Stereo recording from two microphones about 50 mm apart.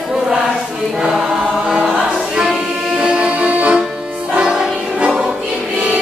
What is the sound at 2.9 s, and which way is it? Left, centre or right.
Music, right.